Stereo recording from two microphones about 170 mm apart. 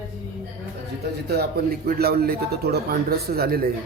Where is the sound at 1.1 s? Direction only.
70° right (ahead or behind).